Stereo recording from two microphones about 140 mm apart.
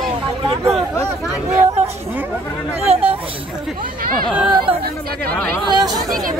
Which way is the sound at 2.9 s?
50° right (ahead or behind).